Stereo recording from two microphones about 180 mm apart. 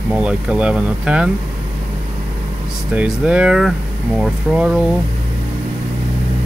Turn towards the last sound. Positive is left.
turn(degrees=-5)  # may be behind; listen again after turning